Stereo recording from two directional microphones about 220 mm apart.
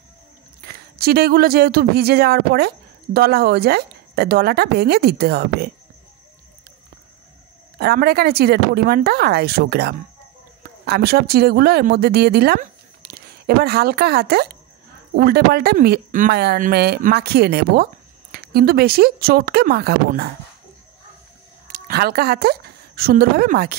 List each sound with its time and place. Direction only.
0.6 s speech: 45° right (ahead or behind)
7.8 s speech: 45° right (ahead or behind)
21.7 s speech: 45° right (ahead or behind)